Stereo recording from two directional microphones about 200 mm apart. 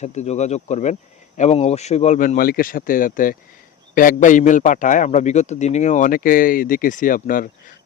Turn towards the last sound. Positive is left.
turn(degrees=45)  # may be behind; listen again after turning